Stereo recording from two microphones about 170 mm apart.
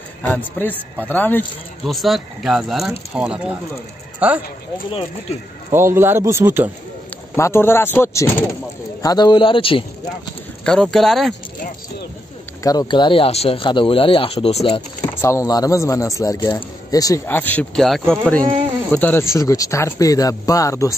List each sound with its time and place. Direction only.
0.3 s speech: 10° left (ahead or behind)
1.9 s speech: centre (ahead or behind)
5.7 s speech: 15° right (ahead or behind)
7.3 s speech: 15° left (ahead or behind); by 10.3 s 30° left (ahead or behind)
10.6 s speech: 5° left (ahead or behind)
12.6 s speech: 25° left (ahead or behind)
15.2 s speech: 20° left (ahead or behind)